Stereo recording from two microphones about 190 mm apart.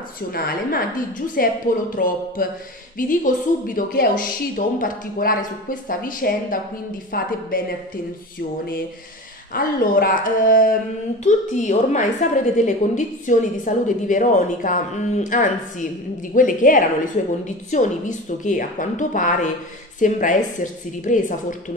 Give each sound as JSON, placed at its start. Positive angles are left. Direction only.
{"t": 0.3, "sound": "a woman's voice", "side_deg": 50}
{"t": 9.5, "sound": "a woman's voice", "side_deg": 50}